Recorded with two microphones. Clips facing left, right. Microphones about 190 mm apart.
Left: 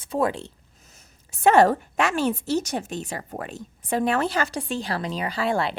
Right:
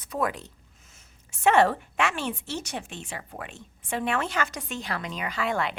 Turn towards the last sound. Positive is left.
turn(degrees=30)  # may be behind; listen again after turning